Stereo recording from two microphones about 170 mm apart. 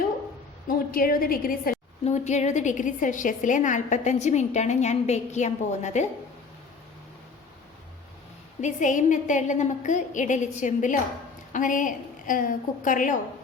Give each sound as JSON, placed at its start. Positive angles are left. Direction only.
{"t": 0.7, "sound": "a woman's voice", "side_deg": 60}
{"t": 2.0, "sound": "a woman's voice", "side_deg": 40}
{"t": 8.6, "sound": "a woman's voice", "side_deg": 45}